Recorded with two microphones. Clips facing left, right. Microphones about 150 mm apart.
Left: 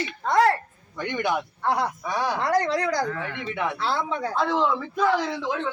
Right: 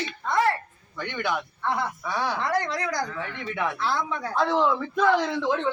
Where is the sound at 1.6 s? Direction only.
35° left (ahead or behind).